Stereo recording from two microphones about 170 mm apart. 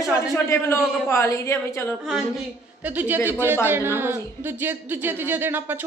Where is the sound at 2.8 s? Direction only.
10° right (ahead or behind).